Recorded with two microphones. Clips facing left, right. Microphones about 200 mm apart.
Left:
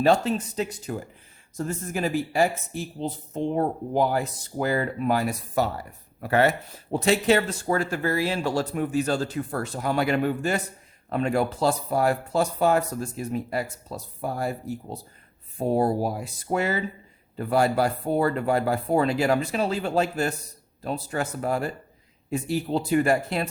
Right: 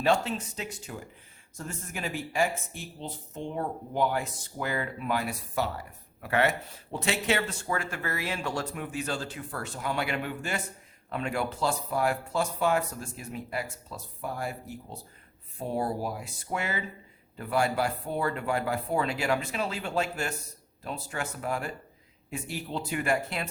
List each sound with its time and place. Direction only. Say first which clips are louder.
0.0 s speech: left 5 dB; 40° left (ahead or behind)